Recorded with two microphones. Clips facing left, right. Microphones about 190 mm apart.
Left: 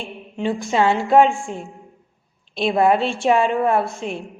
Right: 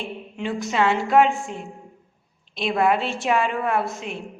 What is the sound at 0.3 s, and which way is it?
A woman's voice, 30° left (ahead or behind).